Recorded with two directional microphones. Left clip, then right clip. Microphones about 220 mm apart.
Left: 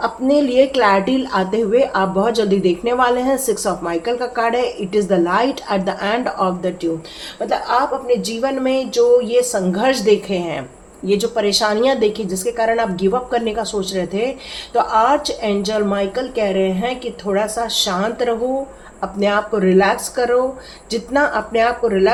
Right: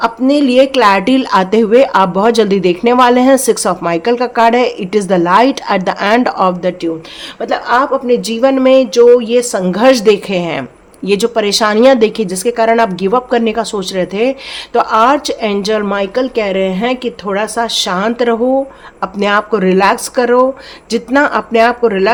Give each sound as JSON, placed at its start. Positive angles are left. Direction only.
{"t": 0.0, "sound": "speech", "side_deg": -45}